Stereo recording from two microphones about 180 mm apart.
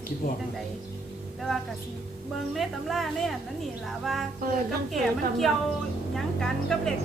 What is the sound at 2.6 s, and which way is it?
A woman's voice, centre (ahead or behind).